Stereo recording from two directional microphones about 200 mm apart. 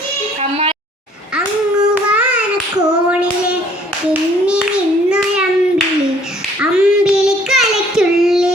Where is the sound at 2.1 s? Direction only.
5° right (ahead or behind).